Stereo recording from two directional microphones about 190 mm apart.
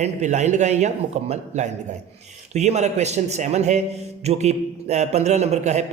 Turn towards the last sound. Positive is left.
turn(degrees=-35)  # may be behind; listen again after turning